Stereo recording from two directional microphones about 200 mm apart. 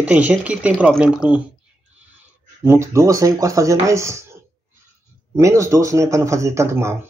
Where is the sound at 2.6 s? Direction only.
15° right (ahead or behind).